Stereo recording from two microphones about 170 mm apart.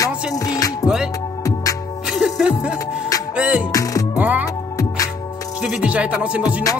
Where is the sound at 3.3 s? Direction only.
5° right (ahead or behind).